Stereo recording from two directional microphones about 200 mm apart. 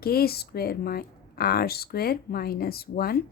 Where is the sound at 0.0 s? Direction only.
50° left (ahead or behind).